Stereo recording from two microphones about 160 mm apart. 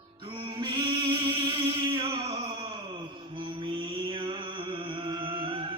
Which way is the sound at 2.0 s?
35° right (ahead or behind).